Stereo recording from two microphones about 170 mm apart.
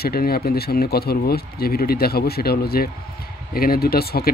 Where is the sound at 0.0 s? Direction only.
65° left (ahead or behind).